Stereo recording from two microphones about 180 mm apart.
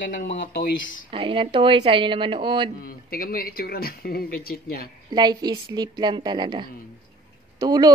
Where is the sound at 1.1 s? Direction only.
30° right (ahead or behind).